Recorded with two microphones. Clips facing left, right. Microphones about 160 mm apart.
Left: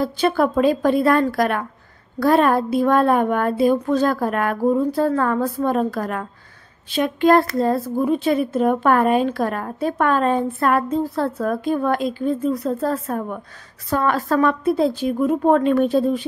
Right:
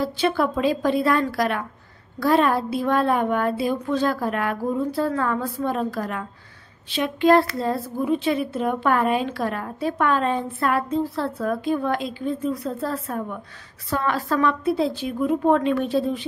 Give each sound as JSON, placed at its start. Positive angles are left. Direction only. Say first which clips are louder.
{"t": 0.0, "sound": "a woman's voice", "louder": "left 3 dB", "side_deg": 45}